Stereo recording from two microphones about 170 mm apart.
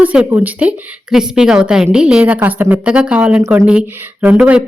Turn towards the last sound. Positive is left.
turn(degrees=-10)  # may be behind; listen again after turning